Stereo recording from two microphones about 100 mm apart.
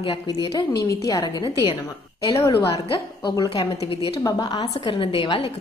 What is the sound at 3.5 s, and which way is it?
Speech, 65° left (ahead or behind).